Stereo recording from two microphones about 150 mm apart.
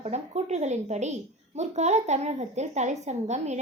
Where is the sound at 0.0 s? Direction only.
45° right (ahead or behind).